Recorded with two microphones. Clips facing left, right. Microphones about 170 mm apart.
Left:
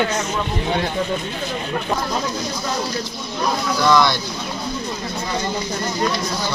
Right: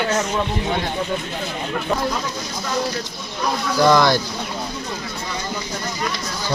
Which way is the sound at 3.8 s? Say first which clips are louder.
Right 2 dB; 40° right (ahead or behind).